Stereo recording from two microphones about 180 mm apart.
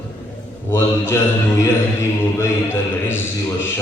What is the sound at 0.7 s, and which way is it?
Speech, 15° left (ahead or behind).